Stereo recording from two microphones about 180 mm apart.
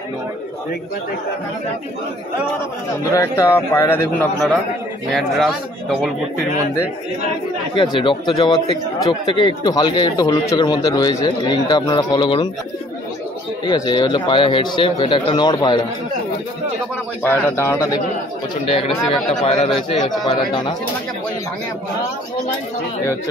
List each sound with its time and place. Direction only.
3.2 s a man's voice: 15° left (ahead or behind)
7.7 s a man's voice: 25° left (ahead or behind)
13.7 s a man's voice: 25° left (ahead or behind)
17.2 s a man's voice: 10° left (ahead or behind)
18.7 s speech: 35° left (ahead or behind)
20.2 s a man's voice: 25° left (ahead or behind)